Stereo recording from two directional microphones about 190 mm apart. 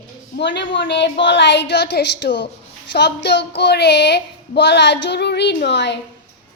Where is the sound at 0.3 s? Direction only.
70° left (ahead or behind).